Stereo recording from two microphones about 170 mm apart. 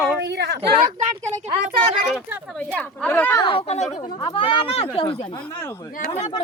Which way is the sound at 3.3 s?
30° left (ahead or behind).